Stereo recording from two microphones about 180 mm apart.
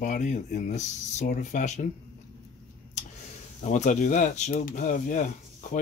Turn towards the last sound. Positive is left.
turn(degrees=45)  # may be behind; listen again after turning